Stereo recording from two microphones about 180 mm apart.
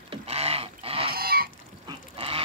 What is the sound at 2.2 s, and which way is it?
Duck, 30° right (ahead or behind).